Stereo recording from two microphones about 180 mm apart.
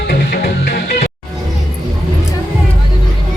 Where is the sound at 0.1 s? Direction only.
65° left (ahead or behind); by 1.1 s 45° left (ahead or behind).